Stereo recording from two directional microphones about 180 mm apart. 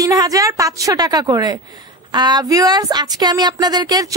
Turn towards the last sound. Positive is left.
turn(degrees=-20)  # may be behind; listen again after turning